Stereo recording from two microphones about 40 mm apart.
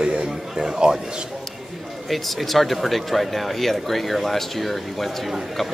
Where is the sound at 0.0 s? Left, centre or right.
Right.